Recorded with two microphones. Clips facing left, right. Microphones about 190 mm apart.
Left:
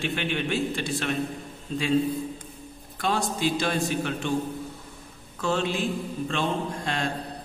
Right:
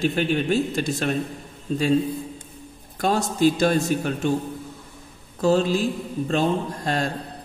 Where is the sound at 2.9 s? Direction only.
45° right (ahead or behind).